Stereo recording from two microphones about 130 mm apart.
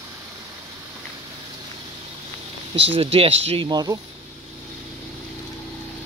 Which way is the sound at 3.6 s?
30° right (ahead or behind).